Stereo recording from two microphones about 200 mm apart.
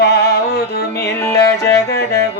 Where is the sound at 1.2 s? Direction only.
15° left (ahead or behind).